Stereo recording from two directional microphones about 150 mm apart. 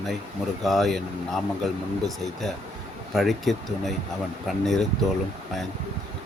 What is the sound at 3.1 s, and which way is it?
Speech, centre (ahead or behind).